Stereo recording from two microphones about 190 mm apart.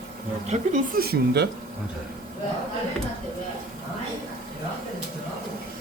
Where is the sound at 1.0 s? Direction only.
55° right (ahead or behind).